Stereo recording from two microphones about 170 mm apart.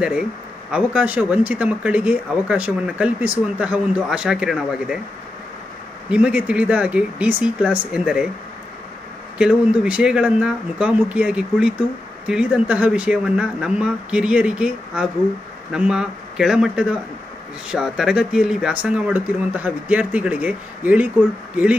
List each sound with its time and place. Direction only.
0.7 s speech: 5° right (ahead or behind)
6.0 s speech: 5° right (ahead or behind)
9.4 s speech: 5° right (ahead or behind)